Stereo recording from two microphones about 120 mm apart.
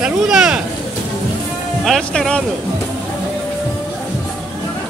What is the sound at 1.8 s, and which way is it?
Speech, 5° left (ahead or behind).